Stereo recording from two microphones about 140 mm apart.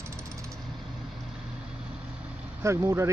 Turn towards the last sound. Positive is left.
turn(degrees=-20)  # may be behind; listen again after turning